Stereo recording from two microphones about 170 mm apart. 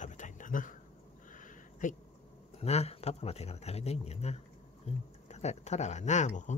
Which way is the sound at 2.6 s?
40° left (ahead or behind).